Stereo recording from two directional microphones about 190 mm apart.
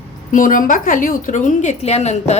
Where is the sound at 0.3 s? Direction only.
45° left (ahead or behind).